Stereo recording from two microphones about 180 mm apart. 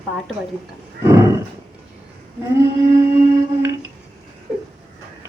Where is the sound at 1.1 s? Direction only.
15° right (ahead or behind).